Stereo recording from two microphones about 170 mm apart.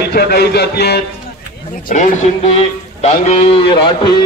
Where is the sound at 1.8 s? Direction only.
50° left (ahead or behind).